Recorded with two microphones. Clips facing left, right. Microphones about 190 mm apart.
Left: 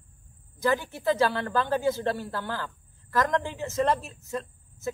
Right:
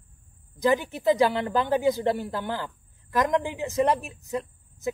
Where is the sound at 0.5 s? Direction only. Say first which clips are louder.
Right 3 dB; 15° right (ahead or behind).